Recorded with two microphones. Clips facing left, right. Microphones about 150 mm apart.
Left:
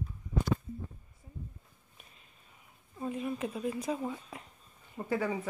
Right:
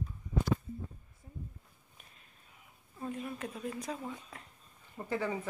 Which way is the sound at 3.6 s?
10° left (ahead or behind).